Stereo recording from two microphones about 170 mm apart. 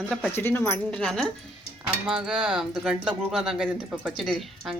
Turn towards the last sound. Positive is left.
turn(degrees=0)  # may be behind; listen again after turning